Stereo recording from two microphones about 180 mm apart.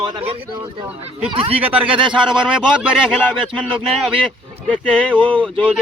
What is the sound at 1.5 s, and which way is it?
A woman's voice, 10° right (ahead or behind).